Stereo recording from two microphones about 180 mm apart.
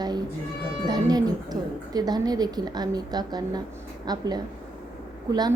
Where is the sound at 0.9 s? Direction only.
20° right (ahead or behind).